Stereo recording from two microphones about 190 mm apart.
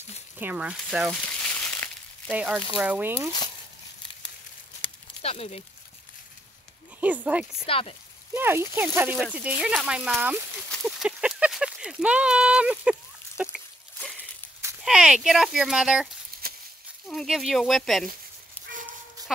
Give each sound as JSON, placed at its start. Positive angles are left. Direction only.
{"t": 0.4, "sound": "crumpling", "side_deg": -5}
{"t": 2.2, "sound": "speech", "side_deg": -5}
{"t": 4.8, "sound": "a sound", "side_deg": 10}
{"t": 5.2, "sound": "speech", "side_deg": 30}
{"t": 7.0, "sound": "speech", "side_deg": -10}
{"t": 7.6, "sound": "speech", "side_deg": 30}
{"t": 8.4, "sound": "speech", "side_deg": -10}
{"t": 10.7, "sound": "a sound", "side_deg": 0}
{"t": 14.8, "sound": "speech", "side_deg": -5}
{"t": 17.1, "sound": "speech", "side_deg": 0}
{"t": 19.2, "sound": "a sound", "side_deg": -20}